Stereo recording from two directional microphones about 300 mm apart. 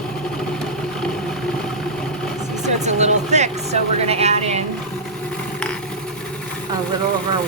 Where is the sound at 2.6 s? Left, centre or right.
Right.